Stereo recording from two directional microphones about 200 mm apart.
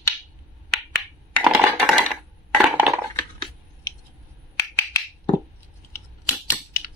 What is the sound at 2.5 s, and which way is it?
Crushing, 5° right (ahead or behind).